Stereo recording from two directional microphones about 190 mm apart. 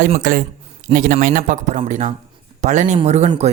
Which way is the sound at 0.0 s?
45° right (ahead or behind).